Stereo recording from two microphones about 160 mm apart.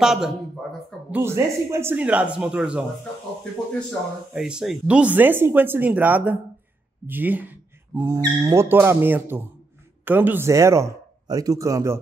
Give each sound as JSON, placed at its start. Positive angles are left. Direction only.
{"t": 0.0, "sound": "a sound", "side_deg": -5}
{"t": 1.2, "sound": "speech", "side_deg": -15}
{"t": 4.3, "sound": "speech", "side_deg": -5}